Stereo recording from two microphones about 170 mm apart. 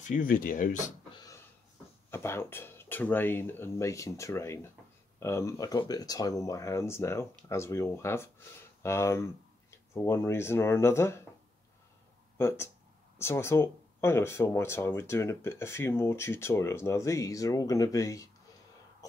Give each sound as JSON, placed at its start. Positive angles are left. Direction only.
{"t": 0.0, "sound": "speech", "side_deg": 50}
{"t": 1.1, "sound": "a sound", "side_deg": 20}
{"t": 2.0, "sound": "speech", "side_deg": 15}
{"t": 12.4, "sound": "speech", "side_deg": 15}